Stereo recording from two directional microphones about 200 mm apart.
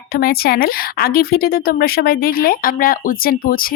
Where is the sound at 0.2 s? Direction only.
50° left (ahead or behind).